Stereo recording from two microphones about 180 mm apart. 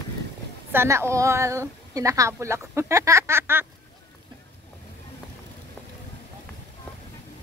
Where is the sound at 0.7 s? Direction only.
15° right (ahead or behind).